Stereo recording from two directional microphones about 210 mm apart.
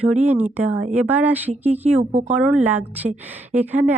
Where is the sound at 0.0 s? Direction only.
5° right (ahead or behind).